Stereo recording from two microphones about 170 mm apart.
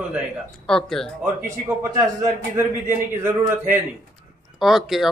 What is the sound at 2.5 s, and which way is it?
A man's voice, 15° right (ahead or behind).